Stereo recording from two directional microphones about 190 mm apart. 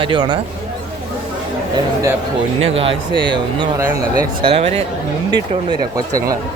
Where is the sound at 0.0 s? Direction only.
25° right (ahead or behind).